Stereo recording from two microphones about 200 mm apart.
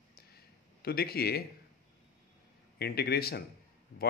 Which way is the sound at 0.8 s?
50° left (ahead or behind).